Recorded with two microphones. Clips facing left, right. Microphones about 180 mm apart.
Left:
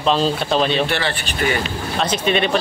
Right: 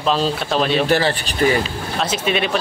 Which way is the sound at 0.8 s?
40° right (ahead or behind).